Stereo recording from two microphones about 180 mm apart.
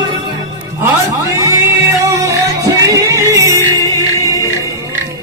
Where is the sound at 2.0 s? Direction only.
15° right (ahead or behind).